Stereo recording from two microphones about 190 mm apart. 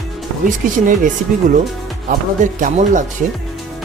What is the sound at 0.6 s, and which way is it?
Speech, 45° right (ahead or behind).